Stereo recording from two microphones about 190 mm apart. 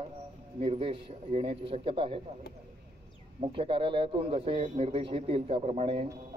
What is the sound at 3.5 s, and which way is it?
Speech, 30° right (ahead or behind).